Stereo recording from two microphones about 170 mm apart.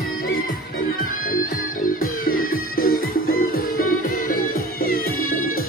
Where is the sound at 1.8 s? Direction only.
55° left (ahead or behind).